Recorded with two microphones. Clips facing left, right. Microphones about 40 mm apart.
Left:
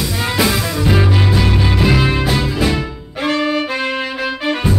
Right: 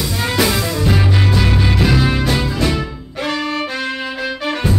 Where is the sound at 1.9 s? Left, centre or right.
Centre.